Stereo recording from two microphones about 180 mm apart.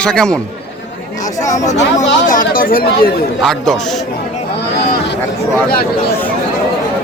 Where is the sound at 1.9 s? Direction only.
45° left (ahead or behind).